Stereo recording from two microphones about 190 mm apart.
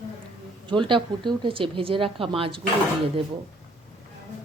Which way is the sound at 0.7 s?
25° right (ahead or behind).